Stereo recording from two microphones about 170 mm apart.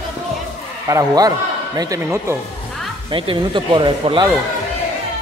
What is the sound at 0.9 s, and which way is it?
Speech, 20° right (ahead or behind).